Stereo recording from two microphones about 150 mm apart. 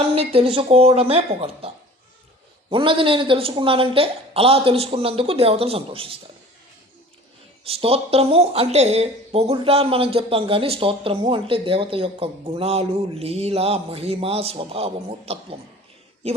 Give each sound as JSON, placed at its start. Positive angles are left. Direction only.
{"t": 0.1, "sound": "speech", "side_deg": -40}
{"t": 7.6, "sound": "speech", "side_deg": -40}